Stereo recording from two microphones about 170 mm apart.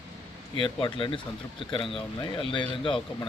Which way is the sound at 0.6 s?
30° left (ahead or behind).